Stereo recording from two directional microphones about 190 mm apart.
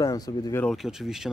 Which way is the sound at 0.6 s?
Centre (ahead or behind).